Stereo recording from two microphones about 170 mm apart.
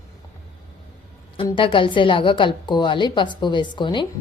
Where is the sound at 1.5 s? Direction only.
30° left (ahead or behind).